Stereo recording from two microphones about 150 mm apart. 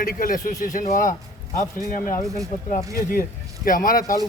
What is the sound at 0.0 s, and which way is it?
A man's voice, 70° left (ahead or behind).